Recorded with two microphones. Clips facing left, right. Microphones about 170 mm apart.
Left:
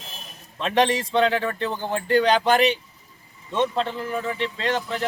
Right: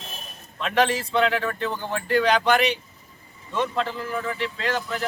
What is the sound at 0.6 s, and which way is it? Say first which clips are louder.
A man's voice: left 1 dB; 30° left (ahead or behind).